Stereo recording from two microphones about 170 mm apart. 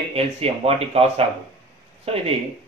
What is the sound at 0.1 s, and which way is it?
Speech, 35° right (ahead or behind).